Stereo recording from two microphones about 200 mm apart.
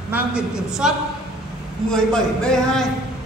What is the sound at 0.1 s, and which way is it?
A man's voice, 5° right (ahead or behind).